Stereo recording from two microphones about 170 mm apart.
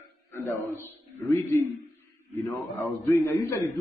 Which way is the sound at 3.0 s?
20° left (ahead or behind).